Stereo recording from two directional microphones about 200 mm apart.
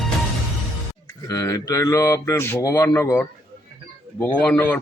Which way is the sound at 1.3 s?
15° left (ahead or behind).